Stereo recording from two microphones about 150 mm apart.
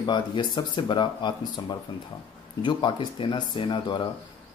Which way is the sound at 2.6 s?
35° left (ahead or behind).